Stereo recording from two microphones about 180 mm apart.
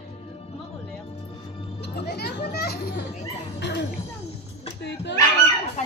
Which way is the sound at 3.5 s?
70° left (ahead or behind).